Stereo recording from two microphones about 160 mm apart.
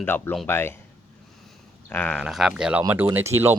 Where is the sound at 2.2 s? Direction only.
Centre (ahead or behind).